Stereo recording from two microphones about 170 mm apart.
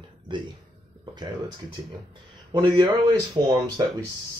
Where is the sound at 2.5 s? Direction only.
30° right (ahead or behind).